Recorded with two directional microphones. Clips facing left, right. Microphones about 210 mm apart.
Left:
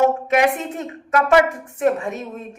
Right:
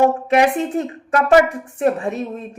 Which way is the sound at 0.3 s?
35° right (ahead or behind).